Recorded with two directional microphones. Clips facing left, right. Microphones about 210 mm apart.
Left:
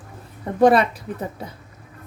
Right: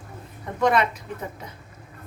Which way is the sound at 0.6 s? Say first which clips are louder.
Left 6 dB; 35° left (ahead or behind).